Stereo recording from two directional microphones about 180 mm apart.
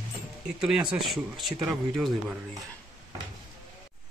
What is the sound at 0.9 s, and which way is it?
Speech, centre (ahead or behind).